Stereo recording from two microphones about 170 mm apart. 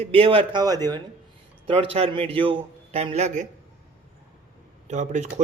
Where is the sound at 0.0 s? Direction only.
35° right (ahead or behind).